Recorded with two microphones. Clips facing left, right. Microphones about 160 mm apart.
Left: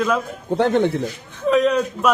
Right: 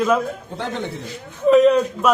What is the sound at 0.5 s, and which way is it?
Speech, 60° left (ahead or behind).